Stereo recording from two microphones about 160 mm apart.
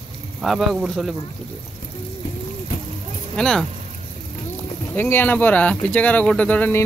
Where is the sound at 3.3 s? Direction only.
5° left (ahead or behind).